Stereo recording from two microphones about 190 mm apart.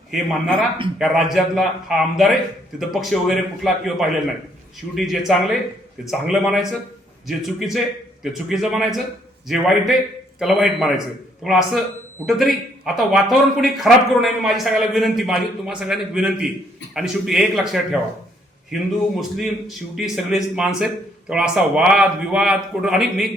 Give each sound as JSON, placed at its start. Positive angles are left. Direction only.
{"t": 0.1, "sound": "a man's voice", "side_deg": 0}